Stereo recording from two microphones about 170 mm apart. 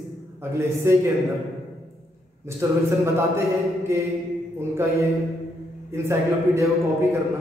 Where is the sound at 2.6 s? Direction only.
15° right (ahead or behind).